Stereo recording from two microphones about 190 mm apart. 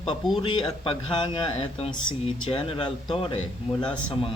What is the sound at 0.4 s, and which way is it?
Speech, 25° left (ahead or behind).